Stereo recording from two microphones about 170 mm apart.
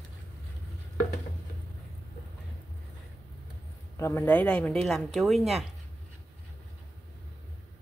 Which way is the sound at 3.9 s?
15° left (ahead or behind).